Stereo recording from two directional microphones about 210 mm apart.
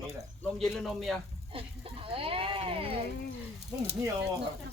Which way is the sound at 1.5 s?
25° right (ahead or behind).